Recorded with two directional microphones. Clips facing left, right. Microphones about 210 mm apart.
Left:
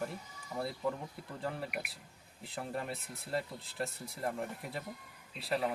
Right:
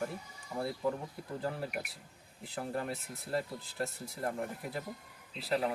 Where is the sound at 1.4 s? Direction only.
Centre (ahead or behind).